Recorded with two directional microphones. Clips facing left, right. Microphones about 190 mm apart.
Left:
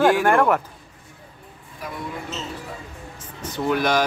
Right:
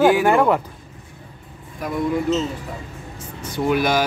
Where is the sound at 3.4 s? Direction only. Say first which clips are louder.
Right 2 dB; 10° right (ahead or behind).